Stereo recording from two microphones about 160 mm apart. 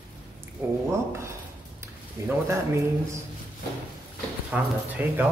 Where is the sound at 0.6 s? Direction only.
15° right (ahead or behind).